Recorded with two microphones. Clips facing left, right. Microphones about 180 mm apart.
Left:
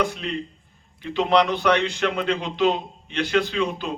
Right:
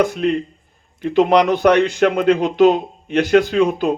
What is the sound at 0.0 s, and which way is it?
A man's voice, 50° right (ahead or behind).